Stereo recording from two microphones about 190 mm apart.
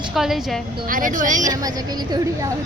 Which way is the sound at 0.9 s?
45° right (ahead or behind).